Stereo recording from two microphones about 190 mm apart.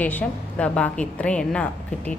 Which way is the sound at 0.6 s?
5° left (ahead or behind).